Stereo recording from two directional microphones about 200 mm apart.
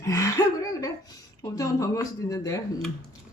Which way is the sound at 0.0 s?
15° left (ahead or behind).